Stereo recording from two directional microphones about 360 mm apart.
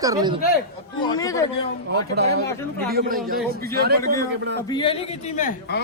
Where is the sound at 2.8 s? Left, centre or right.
Right.